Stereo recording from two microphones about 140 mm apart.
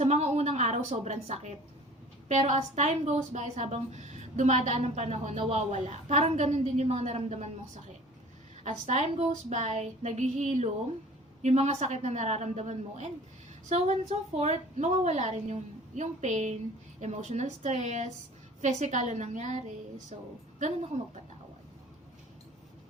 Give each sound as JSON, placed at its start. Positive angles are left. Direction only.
{"t": 0.0, "sound": "a woman's voice", "side_deg": -50}
{"t": 8.6, "sound": "a woman's voice", "side_deg": -55}